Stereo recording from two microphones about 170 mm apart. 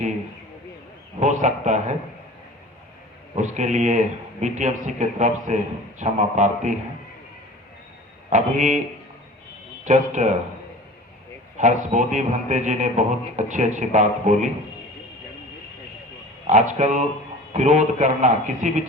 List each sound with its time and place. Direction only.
1.2 s a man's voice: 45° right (ahead or behind)
3.3 s a man's voice: 45° right (ahead or behind)
8.3 s a man's voice: 45° right (ahead or behind)
9.8 s a man's voice: 45° right (ahead or behind)
11.5 s a man's voice: 45° right (ahead or behind)
16.5 s a man's voice: 45° right (ahead or behind)